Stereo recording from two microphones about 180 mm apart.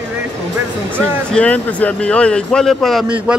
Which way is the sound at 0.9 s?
5° left (ahead or behind).